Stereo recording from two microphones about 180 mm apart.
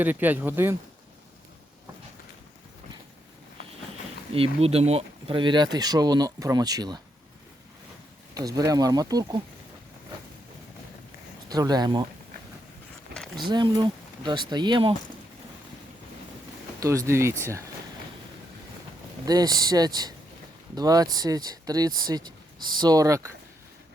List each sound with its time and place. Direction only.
0.0 s speech: 10° right (ahead or behind)
4.4 s speech: 35° right (ahead or behind)
8.4 s speech: 20° right (ahead or behind)
11.4 s speech: 20° right (ahead or behind)
13.3 s speech: 25° right (ahead or behind)
16.8 s speech: 15° right (ahead or behind)
19.2 s speech: 20° right (ahead or behind)